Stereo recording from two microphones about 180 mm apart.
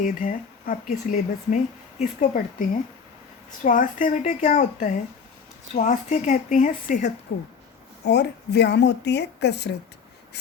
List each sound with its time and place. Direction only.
0.0 s speech: 45° left (ahead or behind)
8.0 s a woman's voice: 70° left (ahead or behind)